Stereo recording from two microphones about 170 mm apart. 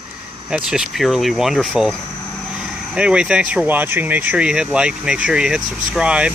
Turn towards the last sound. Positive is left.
turn(degrees=-5)  # may be behind; listen again after turning